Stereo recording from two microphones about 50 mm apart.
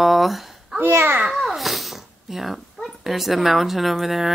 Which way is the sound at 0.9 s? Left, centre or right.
Right.